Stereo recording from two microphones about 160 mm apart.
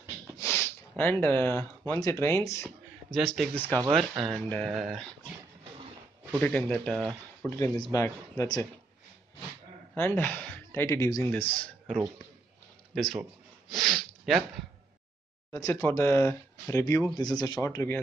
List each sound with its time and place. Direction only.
0.4 s speech: 15° left (ahead or behind)
3.1 s speech: centre (ahead or behind)
6.4 s speech: 10° left (ahead or behind)
9.9 s speech: 15° left (ahead or behind)
11.5 s speech: 5° left (ahead or behind)
13.2 s snort: centre (ahead or behind)
15.5 s speech: 20° left (ahead or behind)